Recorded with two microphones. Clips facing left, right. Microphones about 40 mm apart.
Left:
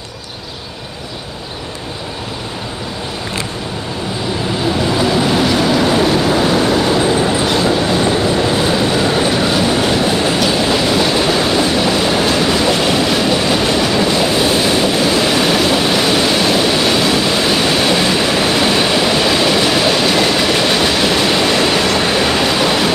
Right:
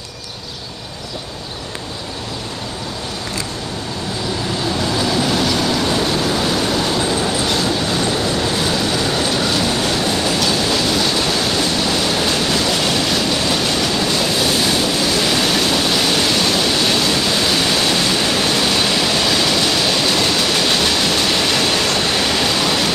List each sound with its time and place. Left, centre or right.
4.6 s train: centre